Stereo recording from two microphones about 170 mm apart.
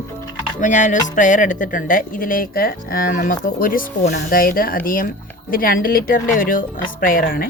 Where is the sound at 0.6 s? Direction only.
45° left (ahead or behind).